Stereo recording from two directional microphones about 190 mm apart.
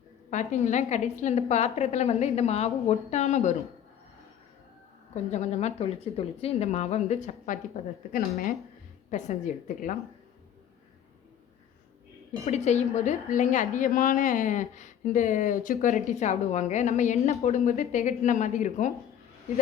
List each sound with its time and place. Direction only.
0.3 s speech: 40° left (ahead or behind)
5.3 s speech: 35° left (ahead or behind)
9.0 s speech: 40° left (ahead or behind)
12.5 s speech: 35° left (ahead or behind)